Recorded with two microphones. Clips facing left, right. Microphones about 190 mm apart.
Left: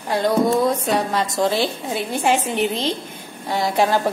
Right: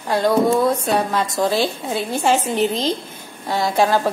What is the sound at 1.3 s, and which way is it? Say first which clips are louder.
Speech: right 1 dB; 20° left (ahead or behind).